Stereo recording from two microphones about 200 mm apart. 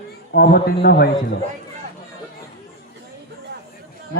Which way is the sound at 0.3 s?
50° left (ahead or behind).